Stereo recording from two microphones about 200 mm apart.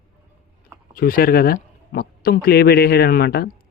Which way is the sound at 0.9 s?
45° left (ahead or behind).